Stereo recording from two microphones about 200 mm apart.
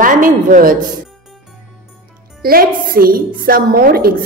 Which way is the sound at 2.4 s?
45° right (ahead or behind).